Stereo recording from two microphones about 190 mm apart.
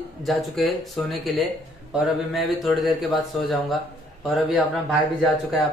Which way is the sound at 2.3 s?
Centre (ahead or behind).